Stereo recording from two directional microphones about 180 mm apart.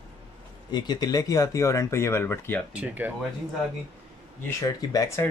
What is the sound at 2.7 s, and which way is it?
Speech, 10° right (ahead or behind).